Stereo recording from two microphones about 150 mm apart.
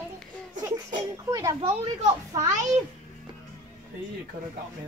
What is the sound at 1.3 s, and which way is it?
Speech, 25° right (ahead or behind).